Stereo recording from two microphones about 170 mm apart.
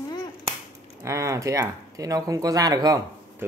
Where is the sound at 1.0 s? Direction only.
15° right (ahead or behind).